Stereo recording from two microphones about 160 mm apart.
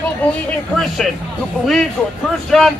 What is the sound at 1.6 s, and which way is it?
Speech, centre (ahead or behind).